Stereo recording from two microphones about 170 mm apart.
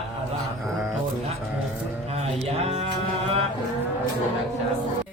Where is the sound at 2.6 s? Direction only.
35° right (ahead or behind).